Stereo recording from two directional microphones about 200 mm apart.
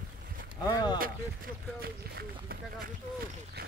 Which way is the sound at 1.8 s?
50° right (ahead or behind).